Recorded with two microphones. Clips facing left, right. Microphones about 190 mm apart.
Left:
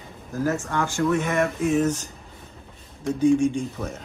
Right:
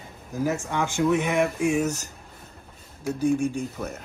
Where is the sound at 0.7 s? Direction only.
15° right (ahead or behind).